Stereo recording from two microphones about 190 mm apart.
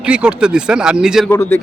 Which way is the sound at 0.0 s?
5° right (ahead or behind).